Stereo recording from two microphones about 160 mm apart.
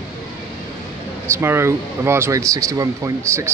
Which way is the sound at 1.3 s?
15° right (ahead or behind).